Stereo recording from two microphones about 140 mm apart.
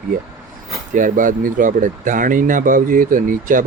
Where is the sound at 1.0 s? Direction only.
70° right (ahead or behind).